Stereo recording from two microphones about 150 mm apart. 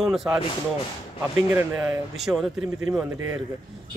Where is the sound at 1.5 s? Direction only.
10° right (ahead or behind).